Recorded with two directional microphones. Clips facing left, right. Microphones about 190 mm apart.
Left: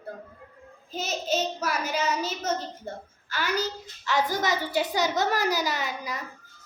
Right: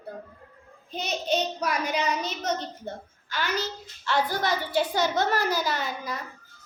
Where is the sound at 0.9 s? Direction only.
5° left (ahead or behind).